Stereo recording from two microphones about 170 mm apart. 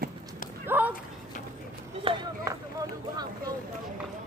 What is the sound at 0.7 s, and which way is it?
Speech, 10° right (ahead or behind).